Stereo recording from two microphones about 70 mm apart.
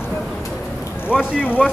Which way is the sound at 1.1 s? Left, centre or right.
Centre.